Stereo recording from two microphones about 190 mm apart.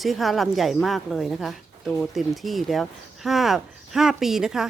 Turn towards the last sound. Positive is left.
turn(degrees=0)  # may be behind; listen again after turning